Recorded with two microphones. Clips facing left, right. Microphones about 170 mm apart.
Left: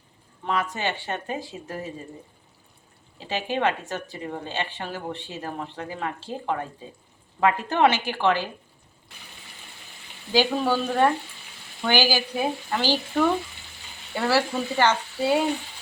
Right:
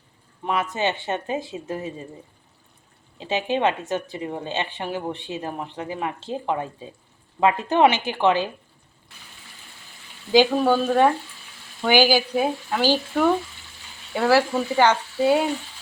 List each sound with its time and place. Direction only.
0.4 s speech: 15° right (ahead or behind)
3.2 s speech: 20° right (ahead or behind)
10.3 s speech: 10° right (ahead or behind)